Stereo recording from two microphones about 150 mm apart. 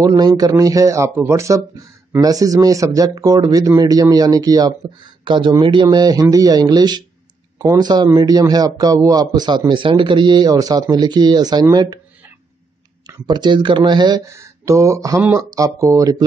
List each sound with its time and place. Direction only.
0.0 s a man's voice: 25° right (ahead or behind)
13.0 s a man's voice: 30° right (ahead or behind)